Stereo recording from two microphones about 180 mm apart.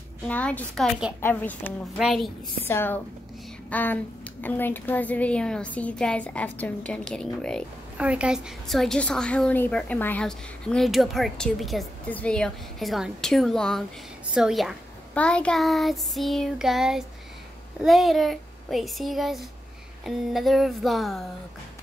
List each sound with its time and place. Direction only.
0.3 s a woman's voice: 10° left (ahead or behind)
2.7 s a woman's voice: 10° left (ahead or behind)
8.0 s a woman's voice: 5° right (ahead or behind)